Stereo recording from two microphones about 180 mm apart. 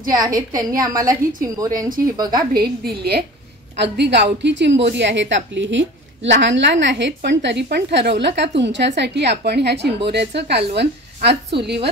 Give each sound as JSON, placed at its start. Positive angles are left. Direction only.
{"t": 0.1, "sound": "a woman's voice", "side_deg": -20}
{"t": 2.8, "sound": "a woman's voice", "side_deg": -60}